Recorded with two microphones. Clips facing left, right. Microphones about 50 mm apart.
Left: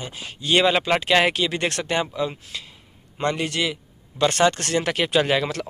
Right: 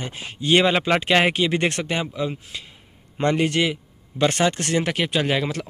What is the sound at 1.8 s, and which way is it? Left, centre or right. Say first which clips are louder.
Speech: left 1 dB; centre.